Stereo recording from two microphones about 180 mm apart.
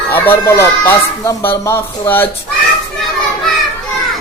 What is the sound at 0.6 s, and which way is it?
Speech, 15° left (ahead or behind).